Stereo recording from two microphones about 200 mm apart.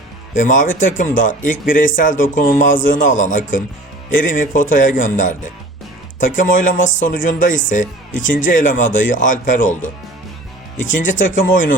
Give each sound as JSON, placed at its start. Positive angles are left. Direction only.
{"t": 0.3, "sound": "speech", "side_deg": 40}
{"t": 11.2, "sound": "speech", "side_deg": 40}